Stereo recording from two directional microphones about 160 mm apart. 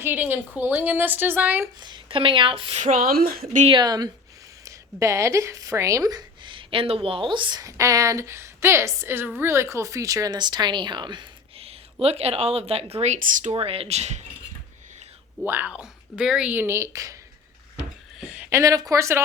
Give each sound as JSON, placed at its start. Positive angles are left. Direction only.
{"t": 0.0, "sound": "speech", "side_deg": -10}
{"t": 1.8, "sound": "speech", "side_deg": -30}
{"t": 2.8, "sound": "speech", "side_deg": -60}
{"t": 3.7, "sound": "speech", "side_deg": -25}
{"t": 13.1, "sound": "speech", "side_deg": -55}
{"t": 15.4, "sound": "speech", "side_deg": -10}
{"t": 18.2, "sound": "a sound", "side_deg": -10}
{"t": 18.6, "sound": "speech", "side_deg": -20}